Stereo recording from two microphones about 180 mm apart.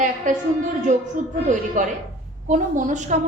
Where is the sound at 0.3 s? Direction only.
45° right (ahead or behind).